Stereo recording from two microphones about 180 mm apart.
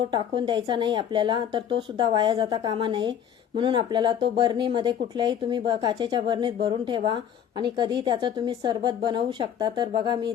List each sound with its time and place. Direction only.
0.0 s speech: 25° right (ahead or behind)